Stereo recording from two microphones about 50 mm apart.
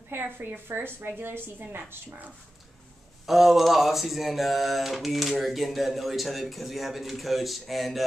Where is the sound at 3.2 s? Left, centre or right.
Centre.